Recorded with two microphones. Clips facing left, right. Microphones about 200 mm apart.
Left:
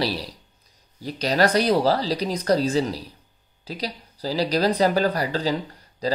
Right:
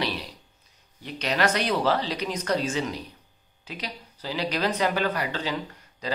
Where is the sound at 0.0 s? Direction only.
35° left (ahead or behind).